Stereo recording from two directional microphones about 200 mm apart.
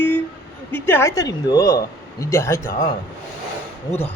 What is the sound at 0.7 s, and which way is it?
A woman's voice, 10° left (ahead or behind).